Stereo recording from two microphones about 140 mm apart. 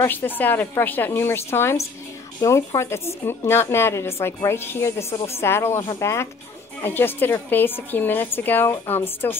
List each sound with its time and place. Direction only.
0.0 s a woman's voice: 15° left (ahead or behind)